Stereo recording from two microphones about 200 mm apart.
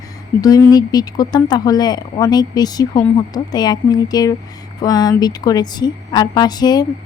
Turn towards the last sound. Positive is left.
turn(degrees=20)  # may be behind; listen again after turning